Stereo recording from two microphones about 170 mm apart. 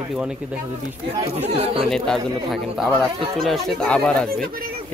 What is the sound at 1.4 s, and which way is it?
Speech, 35° right (ahead or behind).